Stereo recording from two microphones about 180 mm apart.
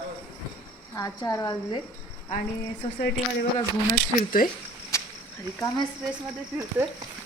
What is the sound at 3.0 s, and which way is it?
Speech, 65° left (ahead or behind).